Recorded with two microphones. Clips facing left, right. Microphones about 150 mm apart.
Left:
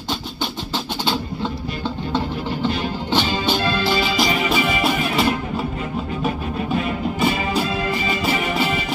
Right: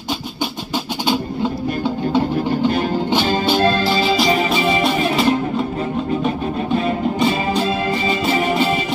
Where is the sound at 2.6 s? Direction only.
45° right (ahead or behind); by 4.8 s 30° right (ahead or behind).